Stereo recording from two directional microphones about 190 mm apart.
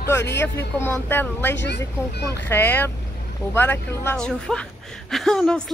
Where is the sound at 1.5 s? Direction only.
65° left (ahead or behind).